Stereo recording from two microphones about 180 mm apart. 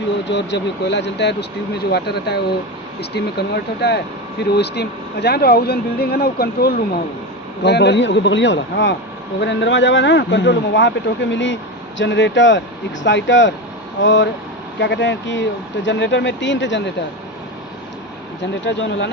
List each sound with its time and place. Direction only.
0.3 s speech: 75° left (ahead or behind)
18.6 s speech: 85° left